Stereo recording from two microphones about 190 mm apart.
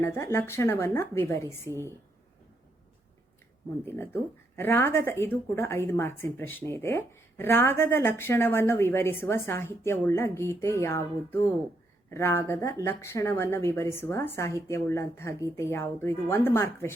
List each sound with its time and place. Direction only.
0.0 s speech: 15° left (ahead or behind)
3.8 s speech: 10° left (ahead or behind)